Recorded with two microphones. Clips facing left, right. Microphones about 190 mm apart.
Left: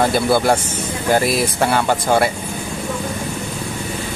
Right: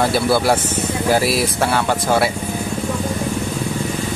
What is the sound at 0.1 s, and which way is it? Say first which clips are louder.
Speech: left 1 dB; 5° right (ahead or behind).